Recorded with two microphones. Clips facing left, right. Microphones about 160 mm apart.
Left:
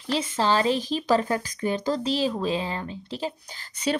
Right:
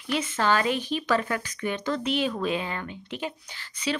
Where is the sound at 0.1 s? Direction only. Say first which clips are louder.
Left 1 dB; 30° left (ahead or behind).